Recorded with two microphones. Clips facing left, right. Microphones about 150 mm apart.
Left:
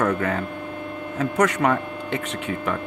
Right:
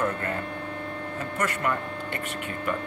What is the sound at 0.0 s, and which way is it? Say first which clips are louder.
Speech: left 6 dB; 90° left.